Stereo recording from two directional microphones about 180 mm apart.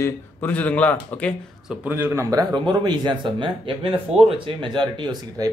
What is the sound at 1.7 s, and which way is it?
Speech, 10° right (ahead or behind).